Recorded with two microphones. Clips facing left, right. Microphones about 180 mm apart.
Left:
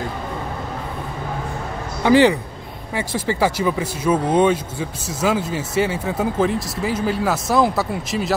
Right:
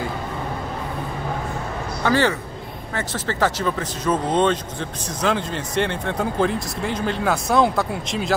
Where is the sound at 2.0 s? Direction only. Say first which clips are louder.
Left 6 dB; 15° left (ahead or behind).